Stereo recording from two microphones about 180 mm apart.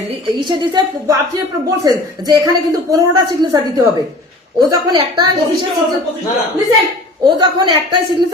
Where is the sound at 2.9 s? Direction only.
20° right (ahead or behind).